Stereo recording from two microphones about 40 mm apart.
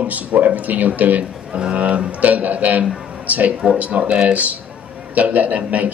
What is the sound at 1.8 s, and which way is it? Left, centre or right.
A man's voice, right.